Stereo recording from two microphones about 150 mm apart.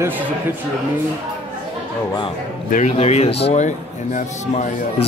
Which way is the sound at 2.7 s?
50° left (ahead or behind).